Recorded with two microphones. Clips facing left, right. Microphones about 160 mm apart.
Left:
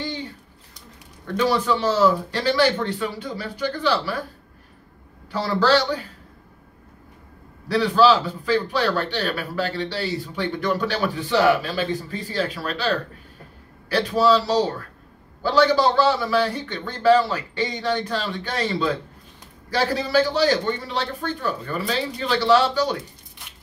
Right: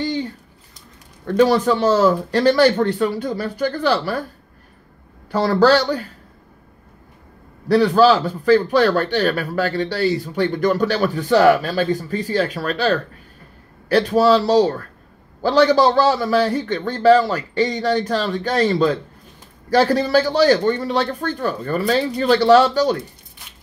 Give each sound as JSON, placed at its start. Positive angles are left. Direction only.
{"t": 1.2, "sound": "a man's voice", "side_deg": -45}
{"t": 5.3, "sound": "a man's voice", "side_deg": -45}
{"t": 7.6, "sound": "a man's voice", "side_deg": -45}